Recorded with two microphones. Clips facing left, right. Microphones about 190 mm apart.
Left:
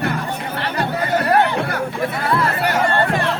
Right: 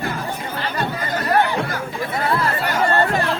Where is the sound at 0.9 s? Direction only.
65° left (ahead or behind).